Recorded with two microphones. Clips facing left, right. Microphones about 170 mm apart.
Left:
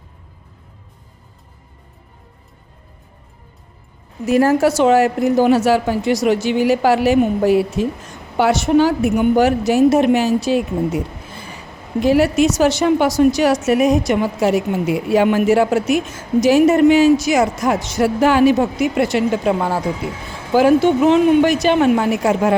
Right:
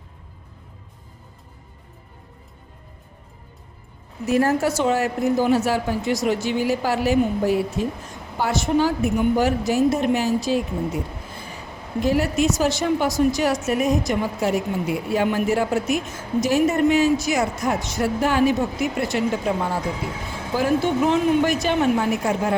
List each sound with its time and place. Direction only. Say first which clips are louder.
4.3 s a woman's voice: left 6 dB; 90° left; by 11.4 s 75° left (ahead or behind)
12.0 s a woman's voice: left 6 dB; 85° left